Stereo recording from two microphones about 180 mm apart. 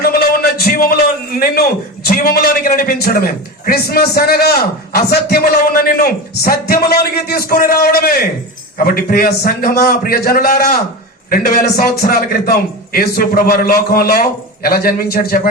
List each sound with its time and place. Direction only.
0.0 s music: 55° left (ahead or behind)
2.0 s a man's voice: 55° left (ahead or behind)